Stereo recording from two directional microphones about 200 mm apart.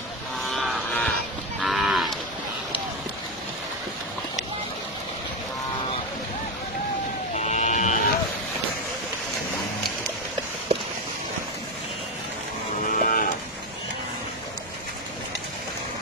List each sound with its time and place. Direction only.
0.4 s a sound: centre (ahead or behind)
1.6 s cattle: centre (ahead or behind)
7.3 s sheep: 35° left (ahead or behind)
12.8 s cattle: 45° left (ahead or behind)